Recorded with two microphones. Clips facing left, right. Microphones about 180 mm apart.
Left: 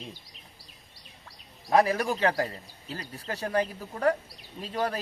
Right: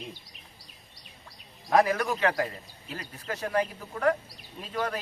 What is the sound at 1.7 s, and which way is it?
Speech, 30° left (ahead or behind).